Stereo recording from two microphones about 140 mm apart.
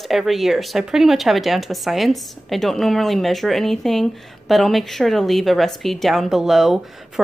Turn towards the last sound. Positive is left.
turn(degrees=0)  # may be behind; listen again after turning